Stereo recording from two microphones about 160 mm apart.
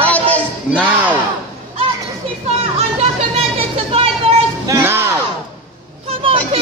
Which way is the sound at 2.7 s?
40° right (ahead or behind).